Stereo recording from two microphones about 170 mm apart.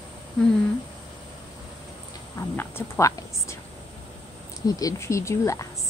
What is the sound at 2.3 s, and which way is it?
A woman's voice, 15° left (ahead or behind).